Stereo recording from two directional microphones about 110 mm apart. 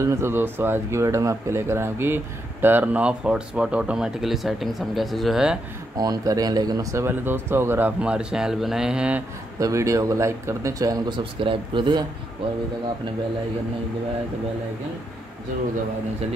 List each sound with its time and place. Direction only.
0.0 s speech: 25° right (ahead or behind); by 5.6 s 5° right (ahead or behind)
5.9 s speech: 35° right (ahead or behind)
7.1 s speech: 20° right (ahead or behind)
8.0 s speech: 10° right (ahead or behind)
9.6 s speech: 30° right (ahead or behind); by 12.0 s 45° right (ahead or behind)